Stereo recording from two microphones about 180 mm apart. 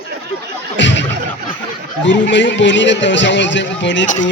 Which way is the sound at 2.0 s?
85° left.